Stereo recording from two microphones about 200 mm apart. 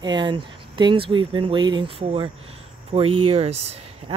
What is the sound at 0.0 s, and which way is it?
Speech, 20° right (ahead or behind).